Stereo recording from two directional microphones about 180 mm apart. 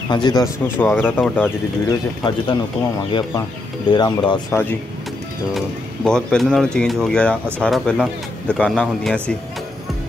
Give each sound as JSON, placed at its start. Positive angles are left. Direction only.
{"t": 0.1, "sound": "speech", "side_deg": 25}
{"t": 0.7, "sound": "speech", "side_deg": 10}
{"t": 1.9, "sound": "speech", "side_deg": 25}
{"t": 4.5, "sound": "speech", "side_deg": 10}
{"t": 6.0, "sound": "a man's voice", "side_deg": 5}